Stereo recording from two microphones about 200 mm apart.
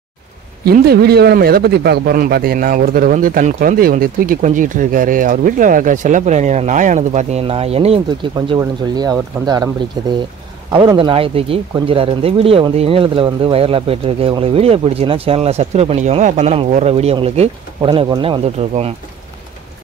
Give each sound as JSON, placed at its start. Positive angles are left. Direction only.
{"t": 0.7, "sound": "speech", "side_deg": -50}